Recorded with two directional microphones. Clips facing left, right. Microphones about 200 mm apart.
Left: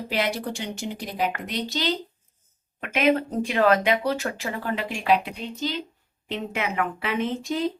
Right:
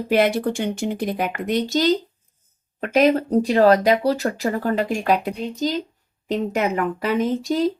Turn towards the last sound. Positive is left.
turn(degrees=-40)  # may be behind; listen again after turning